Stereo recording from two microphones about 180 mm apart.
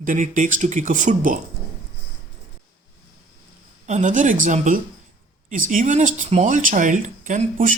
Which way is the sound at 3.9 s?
40° right (ahead or behind).